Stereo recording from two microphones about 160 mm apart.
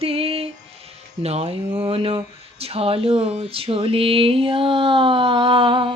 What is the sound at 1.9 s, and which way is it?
Speech, 35° right (ahead or behind).